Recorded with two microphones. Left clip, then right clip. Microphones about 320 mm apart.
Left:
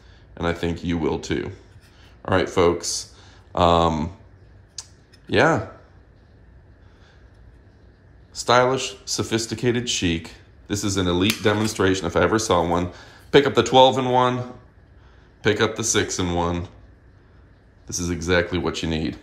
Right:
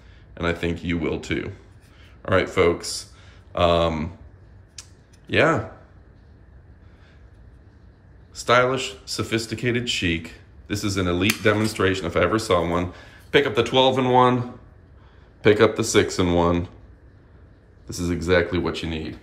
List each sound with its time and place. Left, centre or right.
0.3 s speech: centre
4.7 s computer keyboard: centre
8.3 s speech: centre
17.8 s speech: centre